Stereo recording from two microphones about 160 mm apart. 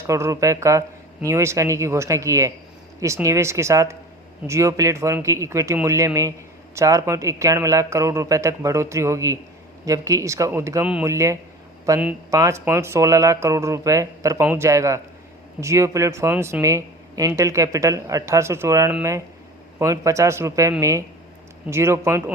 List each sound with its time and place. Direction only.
0.1 s speech: 20° right (ahead or behind)